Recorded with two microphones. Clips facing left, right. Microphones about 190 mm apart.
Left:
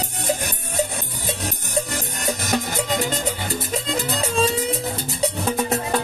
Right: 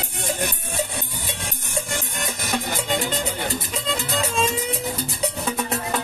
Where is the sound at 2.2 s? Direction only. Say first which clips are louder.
Left 5 dB; 40° left (ahead or behind).